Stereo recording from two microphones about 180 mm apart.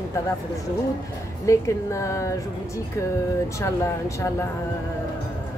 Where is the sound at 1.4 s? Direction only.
15° left (ahead or behind).